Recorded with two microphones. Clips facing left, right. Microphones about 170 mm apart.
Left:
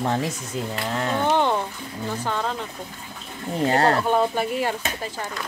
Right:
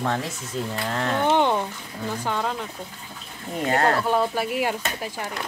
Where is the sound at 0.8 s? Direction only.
10° left (ahead or behind).